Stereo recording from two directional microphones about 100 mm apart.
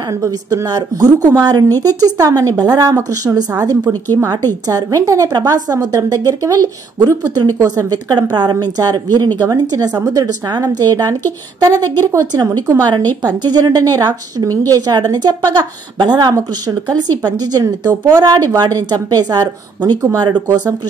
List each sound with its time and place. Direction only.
0.1 s a woman's voice: 30° right (ahead or behind)